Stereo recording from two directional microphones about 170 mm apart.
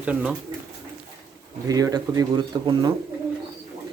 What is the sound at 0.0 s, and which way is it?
Speech, 10° right (ahead or behind).